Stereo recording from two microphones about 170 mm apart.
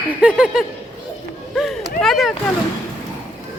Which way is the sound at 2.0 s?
Centre (ahead or behind).